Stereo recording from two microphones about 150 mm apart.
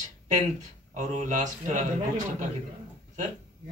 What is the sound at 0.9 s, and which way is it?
Speech, 55° right (ahead or behind).